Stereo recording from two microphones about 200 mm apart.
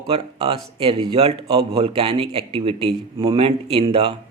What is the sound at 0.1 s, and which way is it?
Speech, 30° right (ahead or behind).